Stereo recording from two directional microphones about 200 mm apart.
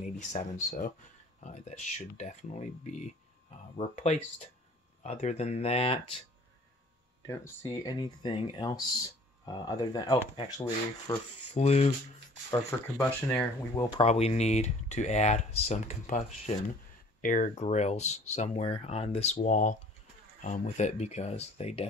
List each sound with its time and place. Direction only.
0.0 s speech: 40° left (ahead or behind)
7.2 s speech: 15° left (ahead or behind)
11.5 s speech: 30° left (ahead or behind)
12.4 s speech: 15° left (ahead or behind)
14.0 s speech: 30° left (ahead or behind)